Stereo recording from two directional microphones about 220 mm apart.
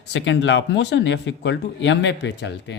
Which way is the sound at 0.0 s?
55° left (ahead or behind).